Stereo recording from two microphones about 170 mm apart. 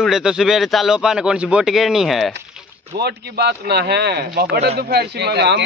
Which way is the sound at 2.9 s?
75° right (ahead or behind).